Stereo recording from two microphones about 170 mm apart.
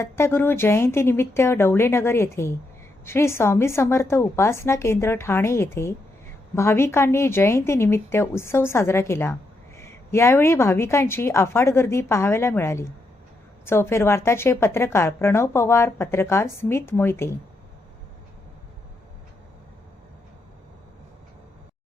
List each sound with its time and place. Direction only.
0.0 s a woman's voice: 15° left (ahead or behind)